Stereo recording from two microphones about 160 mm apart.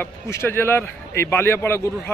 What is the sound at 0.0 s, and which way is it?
A man's voice, 15° left (ahead or behind).